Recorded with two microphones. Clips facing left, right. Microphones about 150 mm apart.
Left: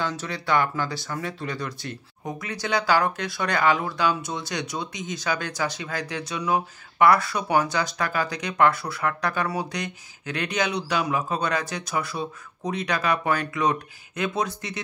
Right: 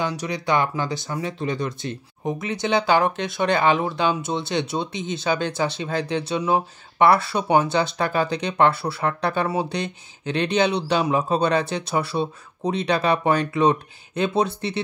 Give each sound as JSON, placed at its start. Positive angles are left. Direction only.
{"t": 0.0, "sound": "speech", "side_deg": -15}